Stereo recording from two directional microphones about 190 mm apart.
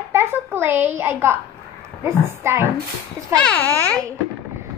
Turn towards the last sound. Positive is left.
turn(degrees=10)  # may be behind; listen again after turning